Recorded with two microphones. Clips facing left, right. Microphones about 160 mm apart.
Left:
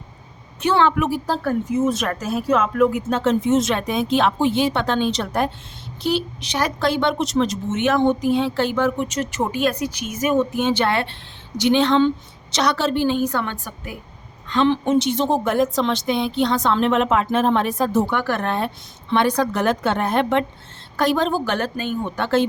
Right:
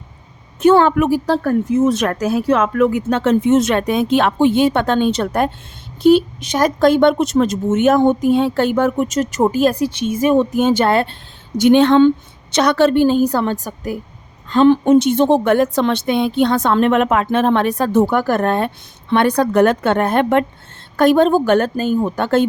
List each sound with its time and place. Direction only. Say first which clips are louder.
0.6 s speech: right 7 dB; 45° right (ahead or behind)
2.0 s a woman's voice: right 5 dB; 75° right (ahead or behind); by 13.1 s 60° right (ahead or behind)
13.1 s a woman's voice: right 6 dB; 40° right (ahead or behind); by 18.0 s 65° right (ahead or behind)
18.1 s a woman's voice: right 6 dB; 45° right (ahead or behind)